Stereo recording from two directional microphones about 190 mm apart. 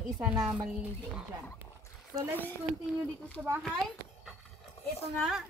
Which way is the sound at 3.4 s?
5° right (ahead or behind).